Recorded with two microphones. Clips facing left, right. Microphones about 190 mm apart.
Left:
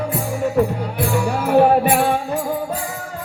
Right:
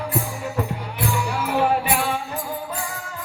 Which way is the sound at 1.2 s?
55° left (ahead or behind).